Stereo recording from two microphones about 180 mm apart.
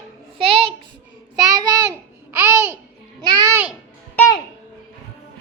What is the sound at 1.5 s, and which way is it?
Child singing, 20° right (ahead or behind).